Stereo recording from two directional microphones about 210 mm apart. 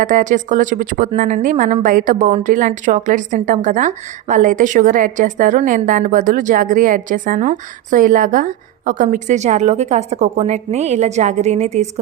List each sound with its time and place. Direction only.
0.0 s a woman's voice: 35° right (ahead or behind)